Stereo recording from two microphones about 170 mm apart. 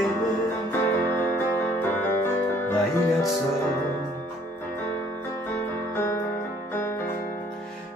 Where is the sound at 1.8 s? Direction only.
15° left (ahead or behind).